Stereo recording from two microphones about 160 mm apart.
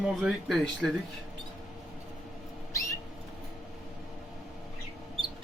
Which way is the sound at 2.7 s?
20° left (ahead or behind).